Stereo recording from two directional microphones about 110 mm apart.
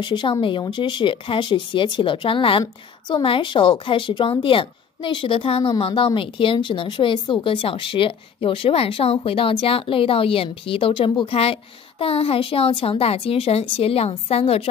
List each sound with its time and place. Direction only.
0.0 s a woman's voice: 50° left (ahead or behind)
12.0 s speech: 60° left (ahead or behind)